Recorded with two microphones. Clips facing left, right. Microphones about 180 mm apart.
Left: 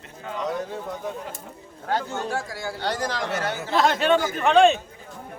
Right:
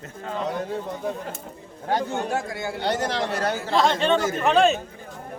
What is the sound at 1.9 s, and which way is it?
Speech, 15° right (ahead or behind).